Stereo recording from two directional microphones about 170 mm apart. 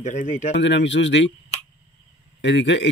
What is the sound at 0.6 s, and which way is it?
Speech, 90° left.